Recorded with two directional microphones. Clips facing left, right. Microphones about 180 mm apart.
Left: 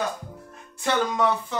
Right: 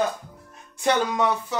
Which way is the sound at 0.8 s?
10° right (ahead or behind).